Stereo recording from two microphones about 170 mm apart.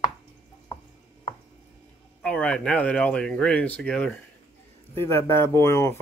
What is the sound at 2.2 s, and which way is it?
Speech, 5° left (ahead or behind).